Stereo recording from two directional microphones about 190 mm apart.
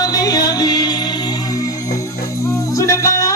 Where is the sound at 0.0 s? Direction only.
20° left (ahead or behind).